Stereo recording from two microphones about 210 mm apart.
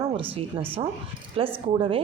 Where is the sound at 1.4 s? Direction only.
25° right (ahead or behind).